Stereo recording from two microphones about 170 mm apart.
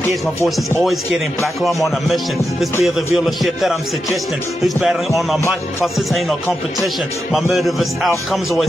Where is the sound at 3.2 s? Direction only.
Centre (ahead or behind).